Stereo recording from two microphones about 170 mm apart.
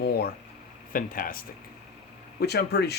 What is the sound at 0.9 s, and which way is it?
Speech, 55° left (ahead or behind).